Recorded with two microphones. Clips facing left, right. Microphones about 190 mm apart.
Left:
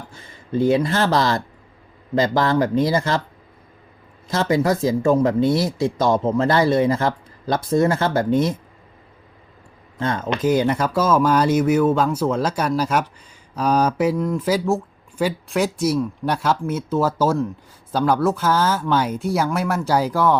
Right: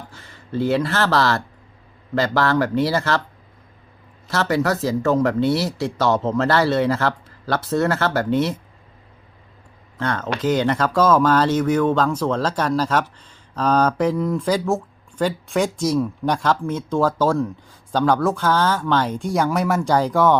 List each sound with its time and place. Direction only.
0.1 s speech: 15° left (ahead or behind)
4.3 s speech: 15° left (ahead or behind)
10.0 s speech: 20° left (ahead or behind)